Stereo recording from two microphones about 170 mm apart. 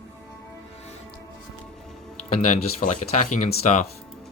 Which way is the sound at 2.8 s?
45° left (ahead or behind).